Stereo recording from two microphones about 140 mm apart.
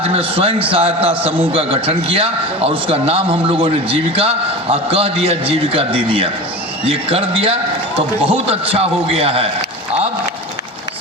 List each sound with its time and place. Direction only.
0.0 s a man's voice: 40° right (ahead or behind)